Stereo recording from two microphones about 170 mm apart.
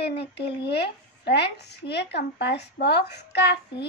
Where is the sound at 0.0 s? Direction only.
75° left (ahead or behind).